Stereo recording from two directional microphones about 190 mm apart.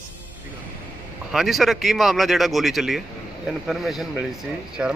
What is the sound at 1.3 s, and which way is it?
Speech, centre (ahead or behind).